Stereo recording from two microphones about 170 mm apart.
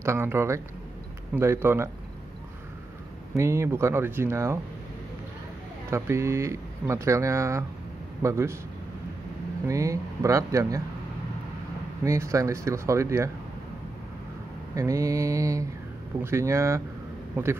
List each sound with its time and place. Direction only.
0.0 s speech: 15° right (ahead or behind)
3.3 s speech: 15° right (ahead or behind)
5.9 s speech: 15° right (ahead or behind)
9.7 s speech: 20° right (ahead or behind)
12.0 s speech: 20° right (ahead or behind)
14.8 s speech: 20° right (ahead or behind)